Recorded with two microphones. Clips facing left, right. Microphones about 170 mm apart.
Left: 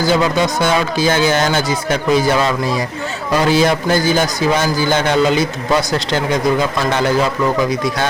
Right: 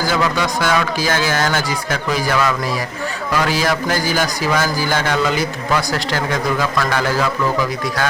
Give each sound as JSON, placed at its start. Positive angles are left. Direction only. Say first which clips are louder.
{"t": 0.1, "sound": "a man's voice", "louder": "left 4 dB", "side_deg": 25}